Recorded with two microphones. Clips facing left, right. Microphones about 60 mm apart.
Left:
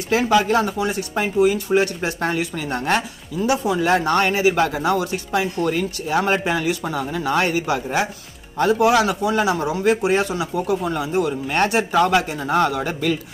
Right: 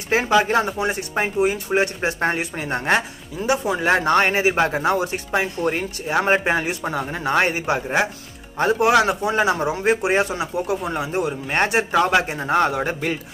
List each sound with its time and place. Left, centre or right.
0.1 s a man's voice: right